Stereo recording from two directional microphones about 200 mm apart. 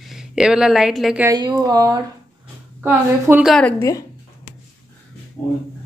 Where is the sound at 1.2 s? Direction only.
20° right (ahead or behind).